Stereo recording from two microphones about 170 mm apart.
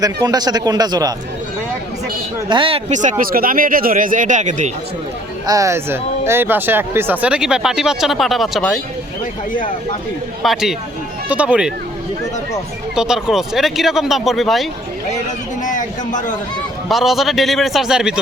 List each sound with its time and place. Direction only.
0.0 s speech: 25° right (ahead or behind)
2.5 s speech: 30° right (ahead or behind)
2.9 s speech: 45° right (ahead or behind)
5.5 s speech: 20° right (ahead or behind); by 8.8 s centre (ahead or behind)
10.4 s speech: centre (ahead or behind)
13.0 s speech: 5° right (ahead or behind)
15.6 s a sound: 50° left (ahead or behind)
16.9 s speech: centre (ahead or behind)